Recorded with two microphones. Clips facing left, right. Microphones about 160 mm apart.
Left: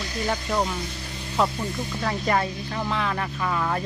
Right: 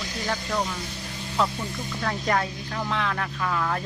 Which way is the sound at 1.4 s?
5° left (ahead or behind).